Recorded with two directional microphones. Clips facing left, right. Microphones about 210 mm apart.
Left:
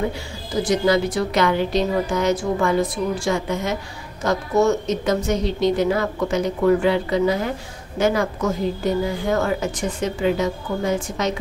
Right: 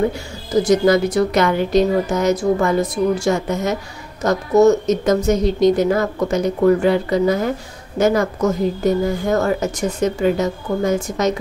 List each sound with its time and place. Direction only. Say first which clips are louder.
0.7 s a woman's voice: right 3 dB; 45° right (ahead or behind)